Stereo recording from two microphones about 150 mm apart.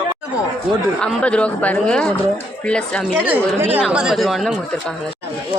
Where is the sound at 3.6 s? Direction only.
10° right (ahead or behind).